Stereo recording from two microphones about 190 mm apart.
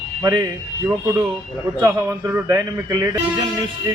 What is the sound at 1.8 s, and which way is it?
A man's voice, 15° right (ahead or behind).